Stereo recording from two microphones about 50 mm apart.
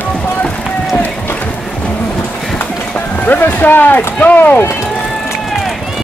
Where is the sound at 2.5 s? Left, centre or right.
Left.